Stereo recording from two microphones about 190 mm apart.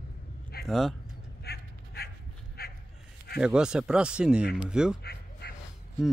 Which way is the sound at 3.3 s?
5° right (ahead or behind).